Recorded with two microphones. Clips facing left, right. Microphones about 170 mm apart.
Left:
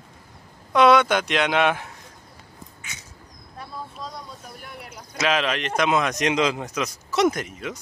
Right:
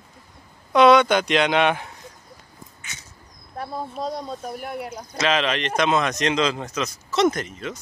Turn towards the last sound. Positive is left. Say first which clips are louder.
# right 1 dB
turn(degrees=10)  # may be behind; listen again after turning